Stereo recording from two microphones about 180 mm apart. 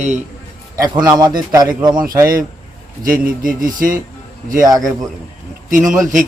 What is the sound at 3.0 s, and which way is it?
Speech, 50° right (ahead or behind).